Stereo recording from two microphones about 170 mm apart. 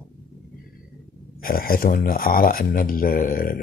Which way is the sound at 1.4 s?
60° left (ahead or behind).